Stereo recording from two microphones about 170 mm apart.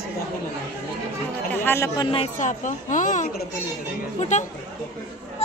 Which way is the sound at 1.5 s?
10° left (ahead or behind).